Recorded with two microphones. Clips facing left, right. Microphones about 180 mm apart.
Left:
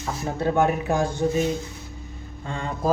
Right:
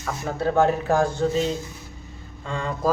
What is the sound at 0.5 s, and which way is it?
Speech, 15° left (ahead or behind).